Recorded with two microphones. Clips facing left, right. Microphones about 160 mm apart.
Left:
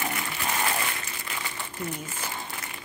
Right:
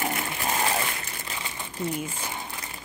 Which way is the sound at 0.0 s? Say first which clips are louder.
Right 2 dB; 25° right (ahead or behind).